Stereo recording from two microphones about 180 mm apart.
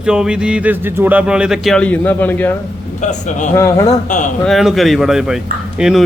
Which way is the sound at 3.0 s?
45° left (ahead or behind).